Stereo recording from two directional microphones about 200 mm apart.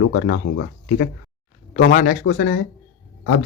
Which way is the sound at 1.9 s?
40° left (ahead or behind).